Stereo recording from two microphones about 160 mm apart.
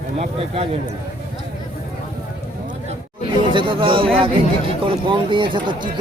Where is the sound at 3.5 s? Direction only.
35° right (ahead or behind).